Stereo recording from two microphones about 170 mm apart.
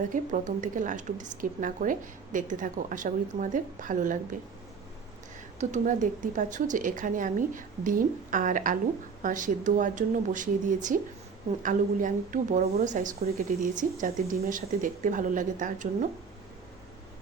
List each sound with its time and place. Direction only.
0.1 s a woman's voice: 50° right (ahead or behind)
5.5 s a woman's voice: 45° right (ahead or behind)